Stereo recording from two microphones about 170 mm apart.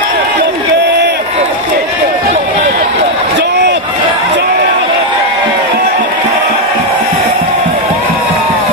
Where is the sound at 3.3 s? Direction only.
85° right.